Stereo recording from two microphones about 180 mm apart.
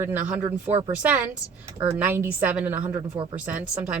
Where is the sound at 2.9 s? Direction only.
25° right (ahead or behind).